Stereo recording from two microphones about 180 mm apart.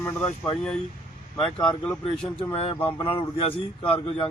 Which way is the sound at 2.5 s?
35° left (ahead or behind).